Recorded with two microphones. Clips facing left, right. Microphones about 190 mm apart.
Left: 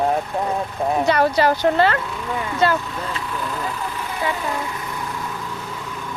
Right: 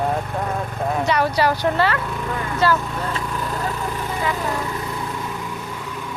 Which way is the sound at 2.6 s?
20° left (ahead or behind).